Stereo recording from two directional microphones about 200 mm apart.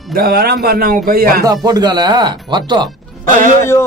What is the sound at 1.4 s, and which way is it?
Speech, 20° right (ahead or behind).